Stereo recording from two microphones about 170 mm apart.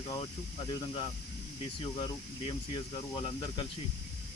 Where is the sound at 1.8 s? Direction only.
30° left (ahead or behind).